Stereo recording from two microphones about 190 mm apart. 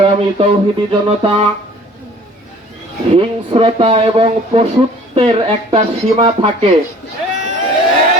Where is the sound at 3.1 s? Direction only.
30° right (ahead or behind).